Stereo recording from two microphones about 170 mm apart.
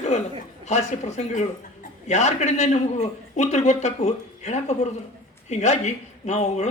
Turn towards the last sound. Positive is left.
turn(degrees=40)  # may be behind; listen again after turning